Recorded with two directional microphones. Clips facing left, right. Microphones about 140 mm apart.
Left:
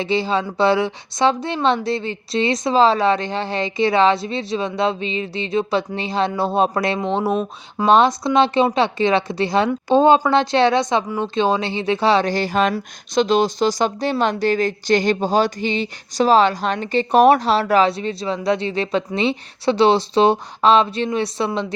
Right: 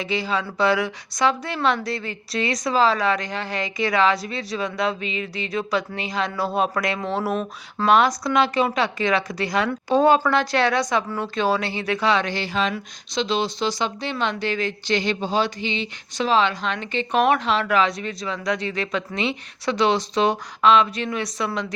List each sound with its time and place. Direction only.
0.0 s a woman's voice: 30° left (ahead or behind)